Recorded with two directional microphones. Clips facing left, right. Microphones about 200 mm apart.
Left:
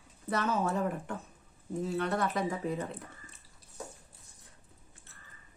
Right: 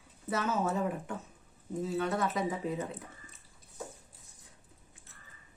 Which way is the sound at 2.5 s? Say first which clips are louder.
Even; 20° right (ahead or behind).